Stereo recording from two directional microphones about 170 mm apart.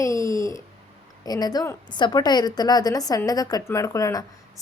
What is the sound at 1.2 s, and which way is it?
A woman's voice, 20° left (ahead or behind).